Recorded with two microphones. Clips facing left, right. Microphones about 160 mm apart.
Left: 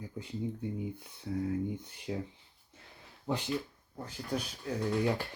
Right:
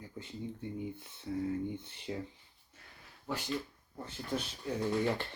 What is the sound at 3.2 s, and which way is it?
Speech, 15° left (ahead or behind).